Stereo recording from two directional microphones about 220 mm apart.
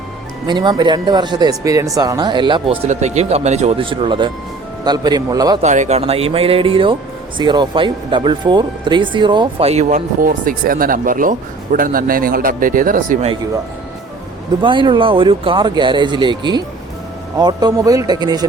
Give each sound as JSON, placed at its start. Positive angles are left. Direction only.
{"t": 0.4, "sound": "speech", "side_deg": -20}
{"t": 5.6, "sound": "speech", "side_deg": -30}
{"t": 14.6, "sound": "speech", "side_deg": -20}